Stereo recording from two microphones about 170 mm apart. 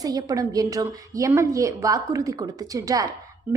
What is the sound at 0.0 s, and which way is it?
A woman's voice, 20° right (ahead or behind).